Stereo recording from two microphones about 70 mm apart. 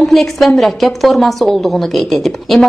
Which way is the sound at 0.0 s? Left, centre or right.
Centre.